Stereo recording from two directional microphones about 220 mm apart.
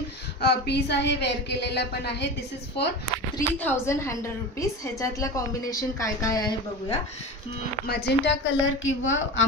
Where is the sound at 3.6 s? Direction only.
10° left (ahead or behind).